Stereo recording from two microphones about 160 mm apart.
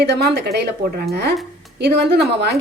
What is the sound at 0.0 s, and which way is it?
A woman's voice, 90° right.